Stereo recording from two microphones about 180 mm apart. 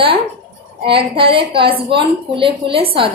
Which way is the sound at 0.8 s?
30° right (ahead or behind).